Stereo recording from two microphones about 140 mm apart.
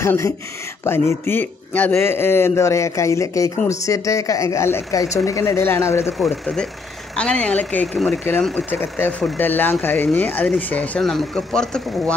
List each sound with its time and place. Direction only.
0.0 s a man's voice: 20° left (ahead or behind)
6.1 s a man's voice: 5° left (ahead or behind)